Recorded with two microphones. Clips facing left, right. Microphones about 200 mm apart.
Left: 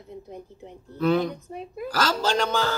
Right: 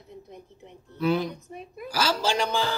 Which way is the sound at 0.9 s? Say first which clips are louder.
Left 3 dB; 10° right (ahead or behind).